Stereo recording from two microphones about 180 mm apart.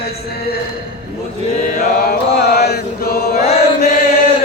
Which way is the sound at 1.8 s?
55° left (ahead or behind).